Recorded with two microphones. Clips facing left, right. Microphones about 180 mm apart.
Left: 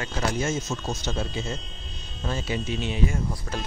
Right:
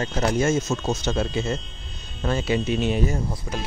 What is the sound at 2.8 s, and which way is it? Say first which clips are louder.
Speech: right 4 dB; 45° right (ahead or behind).